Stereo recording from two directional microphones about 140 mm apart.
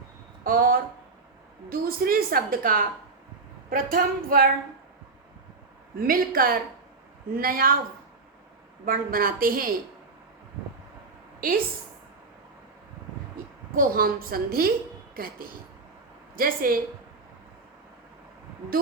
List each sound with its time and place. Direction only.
0.4 s a woman's voice: 90° right
3.9 s a woman's voice: 90° right
6.0 s a woman's voice: 90° right
8.9 s a woman's voice: 90° right
11.3 s a woman's voice: 90° right
13.7 s a woman's voice: 90° right